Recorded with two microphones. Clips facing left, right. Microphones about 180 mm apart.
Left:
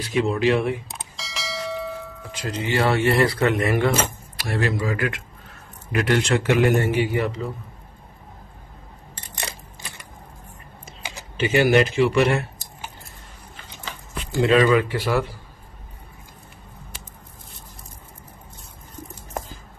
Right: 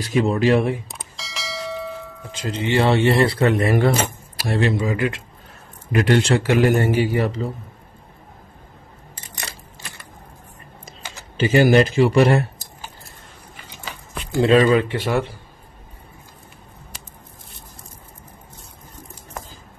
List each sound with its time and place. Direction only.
0.2 s speech: 40° right (ahead or behind)
0.8 s bell: centre (ahead or behind)
2.3 s speech: 25° right (ahead or behind)
9.4 s a sound: 20° left (ahead or behind)
11.0 s typing: 15° left (ahead or behind)
11.3 s speech: 35° right (ahead or behind)
14.4 s speech: 30° right (ahead or behind)